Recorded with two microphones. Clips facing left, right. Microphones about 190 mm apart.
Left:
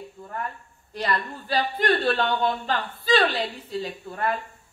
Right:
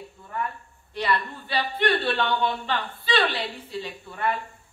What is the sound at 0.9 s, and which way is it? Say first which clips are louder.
A woman's voice: right 1 dB; 40° left (ahead or behind).